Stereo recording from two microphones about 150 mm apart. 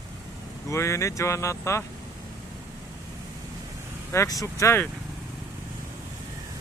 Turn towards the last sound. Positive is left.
turn(degrees=20)  # may be behind; listen again after turning